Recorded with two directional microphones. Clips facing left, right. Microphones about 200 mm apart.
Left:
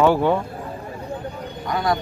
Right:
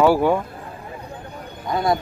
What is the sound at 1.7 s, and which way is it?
Speech, 25° right (ahead or behind).